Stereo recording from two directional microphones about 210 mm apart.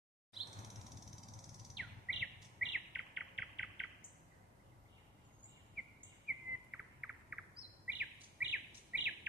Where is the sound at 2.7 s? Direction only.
Centre (ahead or behind).